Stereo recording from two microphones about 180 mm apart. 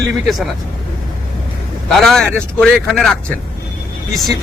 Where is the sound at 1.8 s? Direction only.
Centre (ahead or behind).